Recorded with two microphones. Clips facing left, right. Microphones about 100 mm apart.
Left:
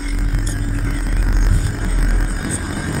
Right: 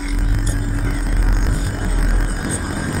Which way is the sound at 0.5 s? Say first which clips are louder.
Right 1 dB; centre (ahead or behind).